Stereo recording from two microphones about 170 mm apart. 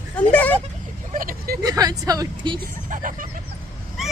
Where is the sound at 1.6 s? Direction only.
20° right (ahead or behind).